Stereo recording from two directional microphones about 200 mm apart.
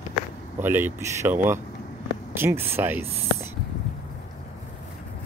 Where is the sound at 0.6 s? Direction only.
10° right (ahead or behind).